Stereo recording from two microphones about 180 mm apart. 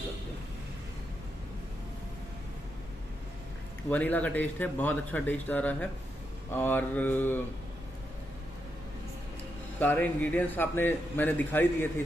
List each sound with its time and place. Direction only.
3.9 s speech: 10° left (ahead or behind)
9.8 s speech: 10° left (ahead or behind)